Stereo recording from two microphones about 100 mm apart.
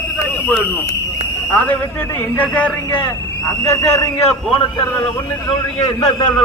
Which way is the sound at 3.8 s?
35° left (ahead or behind).